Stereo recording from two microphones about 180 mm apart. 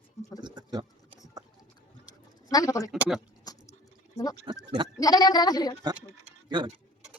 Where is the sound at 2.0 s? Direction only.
20° left (ahead or behind).